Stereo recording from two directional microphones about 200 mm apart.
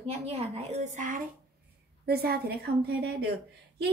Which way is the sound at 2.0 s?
55° right (ahead or behind).